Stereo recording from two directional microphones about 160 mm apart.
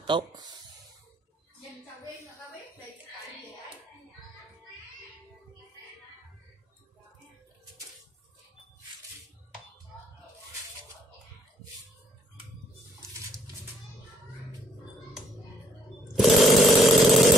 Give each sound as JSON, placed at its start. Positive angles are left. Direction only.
{"t": 0.0, "sound": "speech", "side_deg": -30}
{"t": 16.2, "sound": "chainsaw", "side_deg": 0}